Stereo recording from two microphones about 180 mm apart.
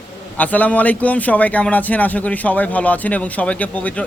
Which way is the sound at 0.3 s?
10° left (ahead or behind).